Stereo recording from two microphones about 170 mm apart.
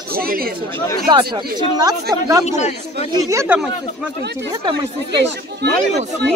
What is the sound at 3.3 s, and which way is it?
Speech, 10° right (ahead or behind).